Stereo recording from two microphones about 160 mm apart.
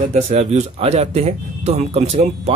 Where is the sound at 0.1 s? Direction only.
45° right (ahead or behind).